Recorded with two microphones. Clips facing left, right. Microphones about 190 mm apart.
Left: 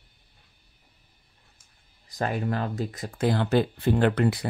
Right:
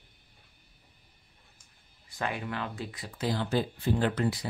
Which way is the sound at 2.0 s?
40° left (ahead or behind).